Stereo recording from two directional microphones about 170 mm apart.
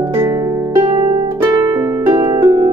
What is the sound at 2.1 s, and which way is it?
Harp, 25° right (ahead or behind).